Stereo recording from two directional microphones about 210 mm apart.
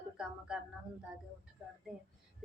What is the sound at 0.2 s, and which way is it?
Speech, 5° right (ahead or behind).